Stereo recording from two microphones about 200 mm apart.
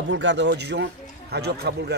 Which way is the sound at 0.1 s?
65° right (ahead or behind).